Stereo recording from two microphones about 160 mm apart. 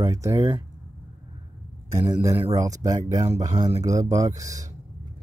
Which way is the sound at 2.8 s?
25° right (ahead or behind).